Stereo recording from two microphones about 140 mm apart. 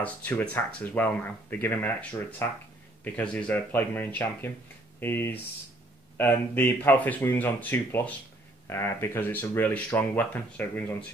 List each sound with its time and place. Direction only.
0.0 s speech: 10° left (ahead or behind)